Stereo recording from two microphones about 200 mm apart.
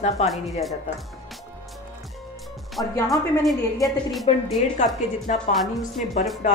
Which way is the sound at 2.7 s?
Centre (ahead or behind).